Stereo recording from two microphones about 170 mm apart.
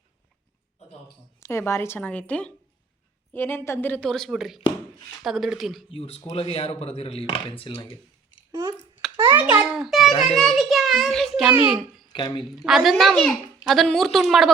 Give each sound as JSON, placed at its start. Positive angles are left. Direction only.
{"t": 1.4, "sound": "a woman's voice", "side_deg": 15}
{"t": 5.9, "sound": "speech", "side_deg": 35}
{"t": 9.3, "sound": "a sound", "side_deg": -10}
{"t": 10.1, "sound": "a child's voice", "side_deg": 40}
{"t": 10.3, "sound": "a child's voice", "side_deg": 0}
{"t": 11.5, "sound": "a child's voice", "side_deg": -10}
{"t": 12.0, "sound": "speech", "side_deg": 25}
{"t": 12.6, "sound": "speech", "side_deg": 0}